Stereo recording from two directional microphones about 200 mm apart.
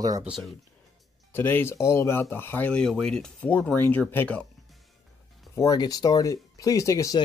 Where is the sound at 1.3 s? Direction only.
10° left (ahead or behind).